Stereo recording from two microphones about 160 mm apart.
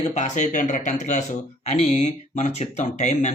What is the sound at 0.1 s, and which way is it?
Speech, 45° left (ahead or behind).